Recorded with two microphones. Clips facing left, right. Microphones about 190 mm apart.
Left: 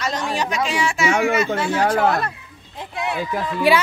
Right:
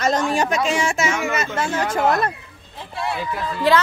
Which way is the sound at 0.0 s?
45° right (ahead or behind).